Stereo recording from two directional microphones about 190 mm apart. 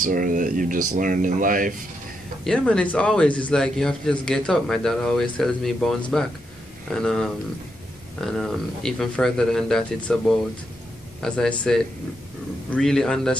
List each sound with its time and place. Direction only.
0.0 s speech: 45° right (ahead or behind)
2.4 s a man's voice: 5° left (ahead or behind)